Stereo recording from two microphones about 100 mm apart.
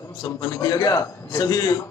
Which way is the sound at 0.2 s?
40° left (ahead or behind).